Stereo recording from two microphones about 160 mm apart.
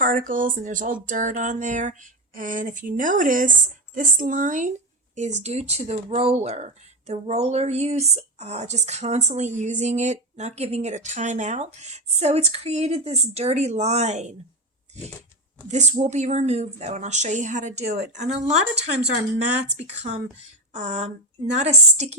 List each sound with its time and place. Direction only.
0.0 s a sound: 55° right (ahead or behind)
5.1 s speech: 45° right (ahead or behind)
15.7 s speech: 45° right (ahead or behind)
19.8 s speech: 40° right (ahead or behind)